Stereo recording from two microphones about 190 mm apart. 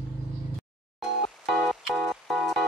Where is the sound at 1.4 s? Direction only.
Centre (ahead or behind).